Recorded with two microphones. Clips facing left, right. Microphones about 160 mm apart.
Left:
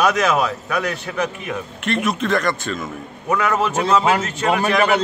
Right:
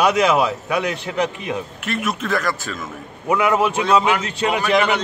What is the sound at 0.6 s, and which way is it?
Speech, 15° right (ahead or behind).